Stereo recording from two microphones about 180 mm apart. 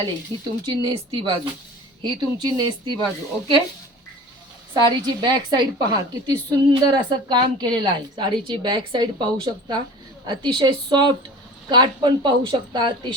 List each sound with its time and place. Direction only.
0.6 s a woman's voice: 25° right (ahead or behind)
4.7 s a woman's voice: 25° right (ahead or behind)